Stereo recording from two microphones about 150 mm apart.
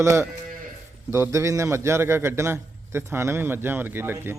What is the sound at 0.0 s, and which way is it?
A man's voice, 20° right (ahead or behind).